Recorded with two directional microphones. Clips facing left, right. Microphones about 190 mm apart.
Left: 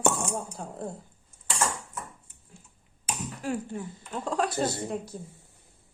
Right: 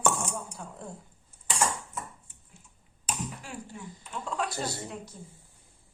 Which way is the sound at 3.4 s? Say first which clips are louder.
Left 10 dB; 40° left (ahead or behind).